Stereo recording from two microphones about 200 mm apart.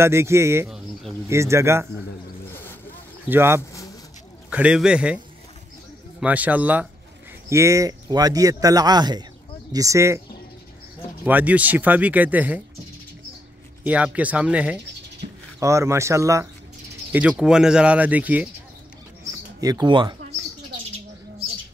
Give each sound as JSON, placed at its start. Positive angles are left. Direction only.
{"t": 0.0, "sound": "speech", "side_deg": -15}
{"t": 3.3, "sound": "speech", "side_deg": -10}
{"t": 6.2, "sound": "speech", "side_deg": -5}
{"t": 11.2, "sound": "speech", "side_deg": -10}
{"t": 13.8, "sound": "speech", "side_deg": -5}
{"t": 19.6, "sound": "speech", "side_deg": -20}